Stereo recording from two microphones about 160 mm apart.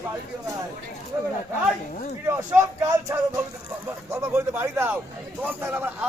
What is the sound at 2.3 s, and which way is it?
Speech, 15° right (ahead or behind).